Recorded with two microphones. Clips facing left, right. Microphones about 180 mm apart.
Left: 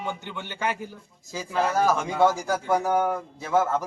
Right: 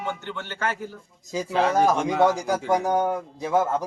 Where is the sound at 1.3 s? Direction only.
20° right (ahead or behind).